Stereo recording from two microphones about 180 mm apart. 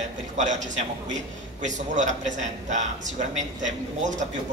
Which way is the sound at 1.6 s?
45° right (ahead or behind).